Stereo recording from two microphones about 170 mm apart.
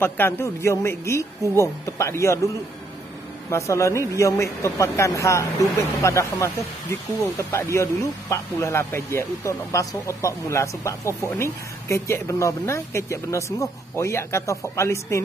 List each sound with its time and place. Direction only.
0.0 s speech: 15° left (ahead or behind)
7.7 s speech: 20° left (ahead or behind)